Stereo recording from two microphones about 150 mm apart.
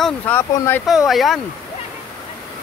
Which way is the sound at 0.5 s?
20° left (ahead or behind).